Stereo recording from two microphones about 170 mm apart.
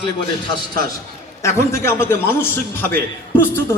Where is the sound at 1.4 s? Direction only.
15° left (ahead or behind).